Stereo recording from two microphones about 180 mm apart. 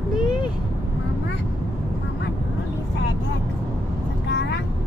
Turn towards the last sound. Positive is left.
turn(degrees=75)  # may be behind; listen again after turning